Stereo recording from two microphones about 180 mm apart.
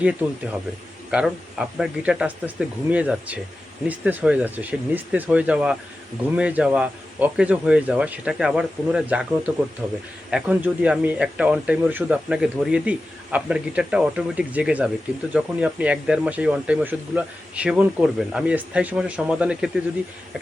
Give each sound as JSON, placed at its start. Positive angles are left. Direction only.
{"t": 0.0, "sound": "speech", "side_deg": -5}